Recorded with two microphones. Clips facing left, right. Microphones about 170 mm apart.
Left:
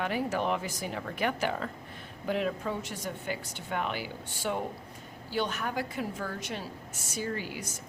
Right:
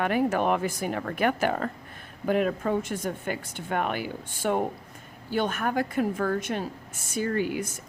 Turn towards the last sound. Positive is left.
turn(degrees=-55)  # may be behind; listen again after turning